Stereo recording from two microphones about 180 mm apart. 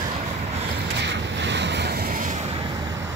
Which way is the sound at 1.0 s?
75° right (ahead or behind).